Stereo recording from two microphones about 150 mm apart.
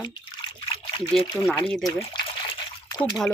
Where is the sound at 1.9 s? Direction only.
35° left (ahead or behind).